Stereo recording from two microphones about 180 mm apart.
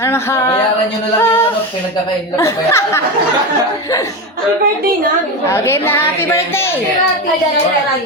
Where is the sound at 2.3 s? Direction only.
15° left (ahead or behind).